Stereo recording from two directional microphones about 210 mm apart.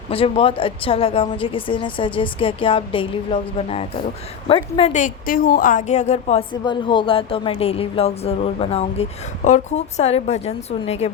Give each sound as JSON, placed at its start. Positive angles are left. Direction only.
{"t": 0.1, "sound": "a woman's voice", "side_deg": 25}